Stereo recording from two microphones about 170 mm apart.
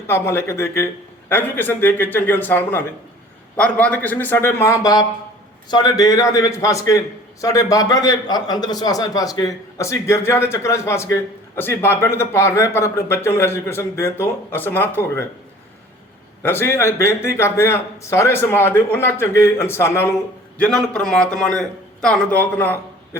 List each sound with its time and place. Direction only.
0.1 s a man's voice: 15° left (ahead or behind)
16.4 s a man's voice: 15° left (ahead or behind)